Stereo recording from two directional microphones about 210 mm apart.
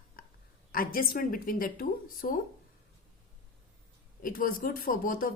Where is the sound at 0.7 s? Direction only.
45° left (ahead or behind).